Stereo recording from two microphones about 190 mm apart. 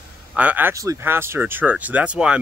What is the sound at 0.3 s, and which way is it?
Speech, 5° right (ahead or behind).